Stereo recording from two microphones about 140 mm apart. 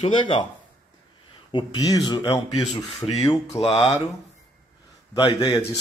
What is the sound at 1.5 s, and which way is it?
Speech, 30° left (ahead or behind).